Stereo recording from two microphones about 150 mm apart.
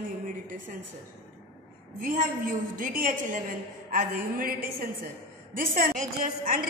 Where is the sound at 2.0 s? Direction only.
65° right (ahead or behind).